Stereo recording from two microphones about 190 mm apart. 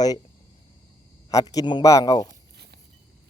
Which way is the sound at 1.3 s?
20° left (ahead or behind).